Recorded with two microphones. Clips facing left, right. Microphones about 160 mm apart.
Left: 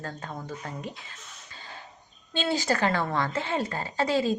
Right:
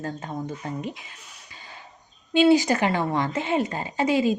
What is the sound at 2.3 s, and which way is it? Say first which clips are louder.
Speech: right 9 dB; 15° right (ahead or behind).